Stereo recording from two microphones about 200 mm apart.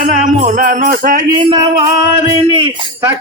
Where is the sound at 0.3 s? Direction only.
40° right (ahead or behind).